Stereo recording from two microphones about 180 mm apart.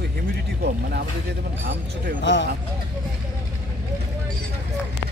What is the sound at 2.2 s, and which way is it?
Speech, 85° left.